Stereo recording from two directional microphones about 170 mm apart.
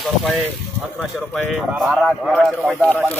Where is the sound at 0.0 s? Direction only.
Centre (ahead or behind).